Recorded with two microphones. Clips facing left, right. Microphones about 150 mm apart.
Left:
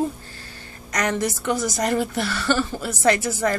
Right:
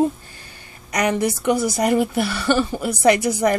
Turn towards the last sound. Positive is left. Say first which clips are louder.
# right 4 dB
turn(degrees=-15)  # may be behind; listen again after turning